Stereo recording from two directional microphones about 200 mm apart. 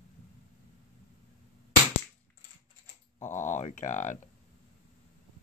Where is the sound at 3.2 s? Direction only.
35° left (ahead or behind).